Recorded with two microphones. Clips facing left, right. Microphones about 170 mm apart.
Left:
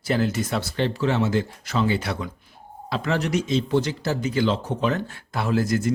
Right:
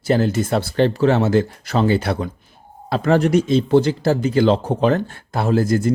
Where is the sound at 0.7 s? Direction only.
45° right (ahead or behind).